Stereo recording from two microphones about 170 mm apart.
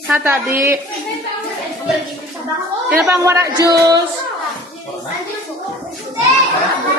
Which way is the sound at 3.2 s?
20° right (ahead or behind).